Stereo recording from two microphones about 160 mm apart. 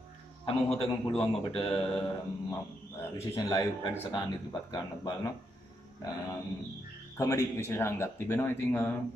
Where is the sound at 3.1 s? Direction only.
15° left (ahead or behind).